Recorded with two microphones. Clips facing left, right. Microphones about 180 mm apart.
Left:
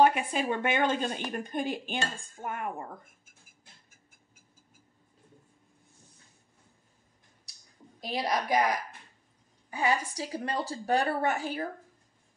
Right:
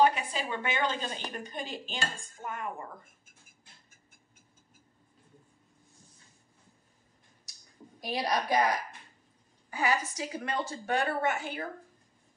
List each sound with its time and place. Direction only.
0.0 s a woman's voice: 50° left (ahead or behind)
8.0 s a woman's voice: 25° left (ahead or behind)
9.7 s a woman's voice: 25° left (ahead or behind)